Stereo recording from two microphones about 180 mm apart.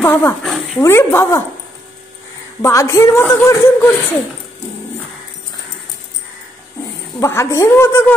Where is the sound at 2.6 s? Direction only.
15° left (ahead or behind).